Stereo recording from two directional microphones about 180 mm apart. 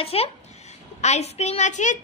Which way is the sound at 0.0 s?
35° left (ahead or behind).